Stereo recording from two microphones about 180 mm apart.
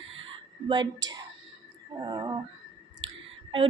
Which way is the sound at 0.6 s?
25° right (ahead or behind).